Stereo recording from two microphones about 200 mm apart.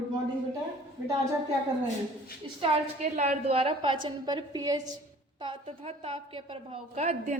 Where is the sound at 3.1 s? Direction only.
35° right (ahead or behind).